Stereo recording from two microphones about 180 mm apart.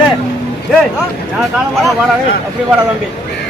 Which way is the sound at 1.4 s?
Centre (ahead or behind).